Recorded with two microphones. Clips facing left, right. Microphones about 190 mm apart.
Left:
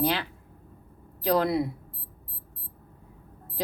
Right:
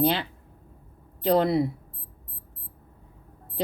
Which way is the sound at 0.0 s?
30° right (ahead or behind).